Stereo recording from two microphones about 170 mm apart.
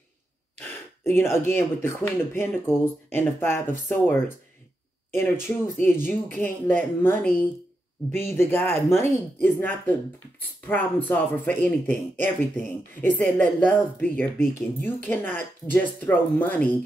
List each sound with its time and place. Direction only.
1.0 s speech: 15° left (ahead or behind)
5.8 s speech: 10° left (ahead or behind)